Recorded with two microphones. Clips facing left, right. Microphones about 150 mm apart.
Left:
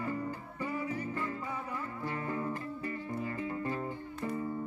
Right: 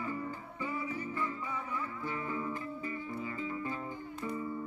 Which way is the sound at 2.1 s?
45° left (ahead or behind).